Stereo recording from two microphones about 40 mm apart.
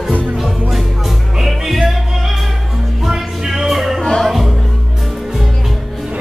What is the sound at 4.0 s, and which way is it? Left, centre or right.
Music, centre.